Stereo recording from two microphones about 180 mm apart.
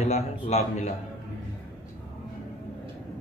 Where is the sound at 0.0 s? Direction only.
35° left (ahead or behind).